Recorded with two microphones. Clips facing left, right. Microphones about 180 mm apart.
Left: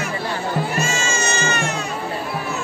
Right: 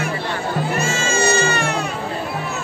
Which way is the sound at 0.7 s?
55° right (ahead or behind).